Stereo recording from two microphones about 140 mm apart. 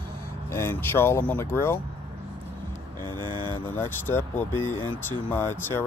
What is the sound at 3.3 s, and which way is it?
Speech, 30° right (ahead or behind).